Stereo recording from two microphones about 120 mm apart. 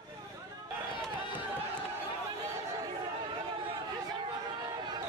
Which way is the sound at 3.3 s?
40° right (ahead or behind).